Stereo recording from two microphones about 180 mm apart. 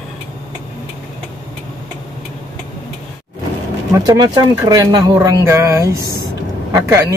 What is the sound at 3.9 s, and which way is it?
Speech, 25° right (ahead or behind).